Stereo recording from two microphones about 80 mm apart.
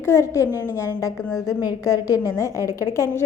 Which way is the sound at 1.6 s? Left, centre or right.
Left.